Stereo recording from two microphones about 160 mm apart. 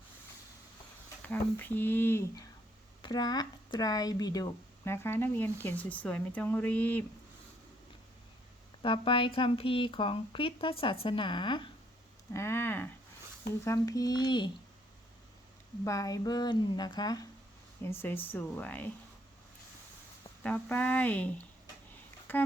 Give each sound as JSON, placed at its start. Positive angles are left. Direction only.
{"t": 1.2, "sound": "speech", "side_deg": 10}
{"t": 3.0, "sound": "speech", "side_deg": 25}
{"t": 8.8, "sound": "speech", "side_deg": 30}
{"t": 12.3, "sound": "speech", "side_deg": 15}
{"t": 15.8, "sound": "speech", "side_deg": 20}
{"t": 17.8, "sound": "speech", "side_deg": 15}
{"t": 20.4, "sound": "speech", "side_deg": 10}